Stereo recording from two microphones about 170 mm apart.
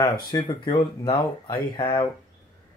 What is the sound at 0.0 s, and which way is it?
Speech, 25° left (ahead or behind).